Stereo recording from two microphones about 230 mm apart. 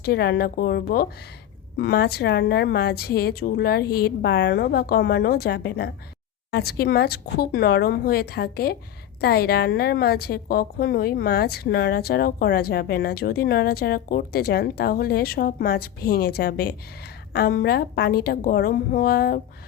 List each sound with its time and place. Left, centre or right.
0.0 s a woman's voice: left